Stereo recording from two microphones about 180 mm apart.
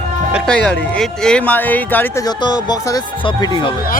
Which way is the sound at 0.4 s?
5° left (ahead or behind).